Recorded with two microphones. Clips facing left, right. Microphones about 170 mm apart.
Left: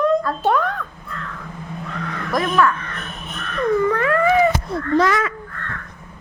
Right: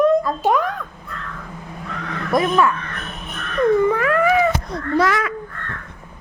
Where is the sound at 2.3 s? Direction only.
25° right (ahead or behind).